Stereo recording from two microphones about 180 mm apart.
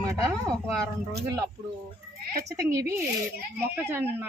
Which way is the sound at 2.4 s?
15° right (ahead or behind).